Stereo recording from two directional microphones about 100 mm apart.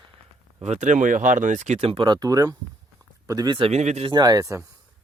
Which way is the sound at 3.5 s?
80° right.